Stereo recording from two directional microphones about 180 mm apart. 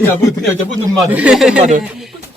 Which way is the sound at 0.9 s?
10° right (ahead or behind).